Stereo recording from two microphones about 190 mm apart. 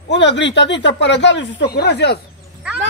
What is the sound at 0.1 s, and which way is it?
Speech, 70° left (ahead or behind).